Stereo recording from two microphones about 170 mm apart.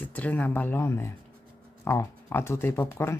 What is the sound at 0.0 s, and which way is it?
Speech, 10° left (ahead or behind).